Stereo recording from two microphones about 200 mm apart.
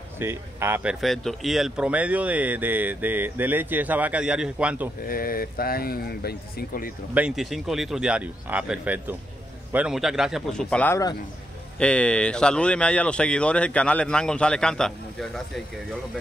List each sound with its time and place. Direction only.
0.2 s speech: 10° right (ahead or behind)
1.0 s speech: centre (ahead or behind)
5.0 s speech: 45° left (ahead or behind)
7.2 s speech: 5° right (ahead or behind)